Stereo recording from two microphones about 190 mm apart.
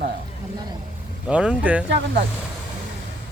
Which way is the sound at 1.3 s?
5° right (ahead or behind).